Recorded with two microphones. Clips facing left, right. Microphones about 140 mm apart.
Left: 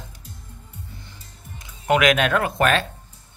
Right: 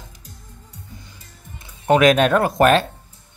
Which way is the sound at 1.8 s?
30° right (ahead or behind).